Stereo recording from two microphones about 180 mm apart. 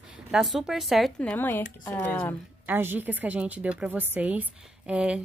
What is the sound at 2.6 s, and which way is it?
A woman's voice, 10° right (ahead or behind).